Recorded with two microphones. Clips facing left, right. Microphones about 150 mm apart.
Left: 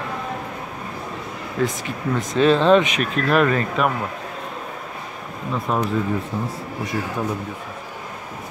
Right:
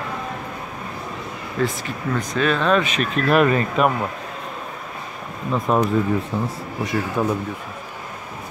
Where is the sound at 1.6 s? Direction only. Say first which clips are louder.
Left 1 dB; 20° left (ahead or behind).